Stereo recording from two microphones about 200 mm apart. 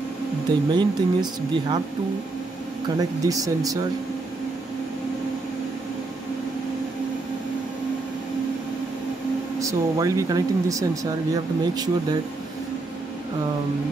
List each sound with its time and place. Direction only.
0.7 s speech: 20° right (ahead or behind)
3.0 s speech: 15° right (ahead or behind)
9.6 s speech: 15° right (ahead or behind)